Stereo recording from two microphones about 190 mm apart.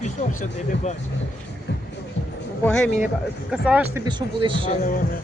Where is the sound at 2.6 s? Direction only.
5° left (ahead or behind).